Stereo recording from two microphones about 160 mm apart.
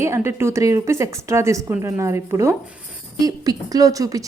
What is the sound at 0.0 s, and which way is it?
A woman's voice, 15° right (ahead or behind).